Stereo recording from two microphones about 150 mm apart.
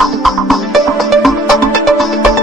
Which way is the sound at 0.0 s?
Centre (ahead or behind).